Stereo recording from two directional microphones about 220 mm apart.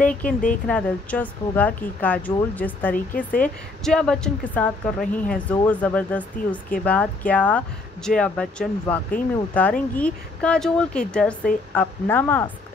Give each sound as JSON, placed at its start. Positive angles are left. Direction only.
{"t": 0.0, "sound": "speech", "side_deg": 5}
{"t": 3.3, "sound": "a woman's voice", "side_deg": 40}
{"t": 3.8, "sound": "speech", "side_deg": 5}